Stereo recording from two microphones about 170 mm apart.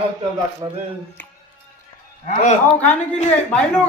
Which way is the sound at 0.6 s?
30° right (ahead or behind).